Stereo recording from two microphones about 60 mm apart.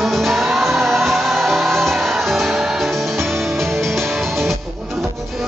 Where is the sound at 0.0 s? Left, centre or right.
Centre.